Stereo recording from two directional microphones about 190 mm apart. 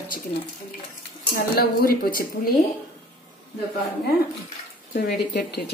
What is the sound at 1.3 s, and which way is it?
Speech, 55° left (ahead or behind).